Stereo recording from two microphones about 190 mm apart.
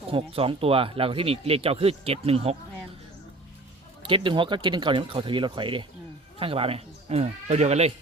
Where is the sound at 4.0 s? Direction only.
25° right (ahead or behind).